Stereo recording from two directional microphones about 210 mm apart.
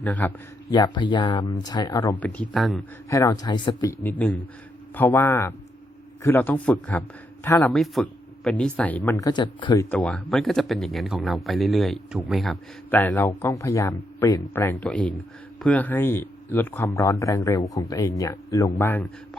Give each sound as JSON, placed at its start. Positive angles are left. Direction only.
{"t": 0.0, "sound": "speech", "side_deg": 10}
{"t": 0.7, "sound": "speech", "side_deg": 20}
{"t": 2.1, "sound": "speech", "side_deg": 5}
{"t": 3.1, "sound": "speech", "side_deg": 15}
{"t": 7.7, "sound": "speech", "side_deg": 0}
{"t": 9.9, "sound": "speech", "side_deg": 5}